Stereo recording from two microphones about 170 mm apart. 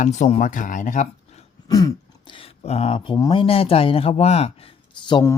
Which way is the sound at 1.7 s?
20° left (ahead or behind).